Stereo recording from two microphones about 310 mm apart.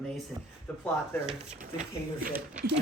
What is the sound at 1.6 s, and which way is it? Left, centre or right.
A woman's voice, right.